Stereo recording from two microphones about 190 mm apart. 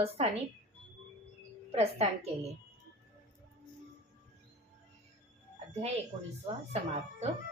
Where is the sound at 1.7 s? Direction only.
30° right (ahead or behind).